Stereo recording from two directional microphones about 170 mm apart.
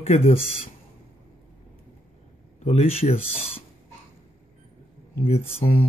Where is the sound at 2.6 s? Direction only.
35° left (ahead or behind).